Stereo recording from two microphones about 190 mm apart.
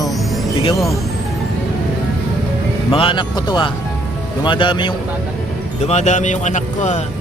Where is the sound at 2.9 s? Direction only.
30° left (ahead or behind).